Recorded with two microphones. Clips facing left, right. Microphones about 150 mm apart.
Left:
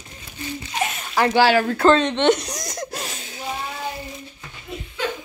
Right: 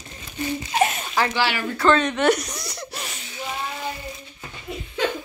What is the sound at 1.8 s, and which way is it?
Speech, 30° left (ahead or behind).